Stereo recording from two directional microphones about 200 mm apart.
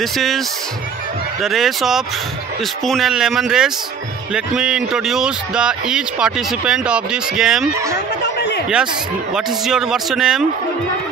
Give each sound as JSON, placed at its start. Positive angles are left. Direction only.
{"t": 0.0, "sound": "speech", "side_deg": 0}
{"t": 1.4, "sound": "speech", "side_deg": 0}
{"t": 8.4, "sound": "a sound", "side_deg": 55}
{"t": 9.3, "sound": "speech", "side_deg": 0}